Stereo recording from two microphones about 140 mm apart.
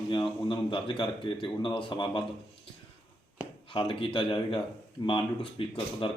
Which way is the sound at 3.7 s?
40° left (ahead or behind).